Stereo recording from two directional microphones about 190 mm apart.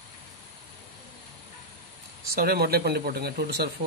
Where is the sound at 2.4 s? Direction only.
55° right (ahead or behind).